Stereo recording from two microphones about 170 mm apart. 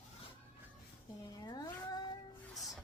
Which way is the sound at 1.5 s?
25° left (ahead or behind).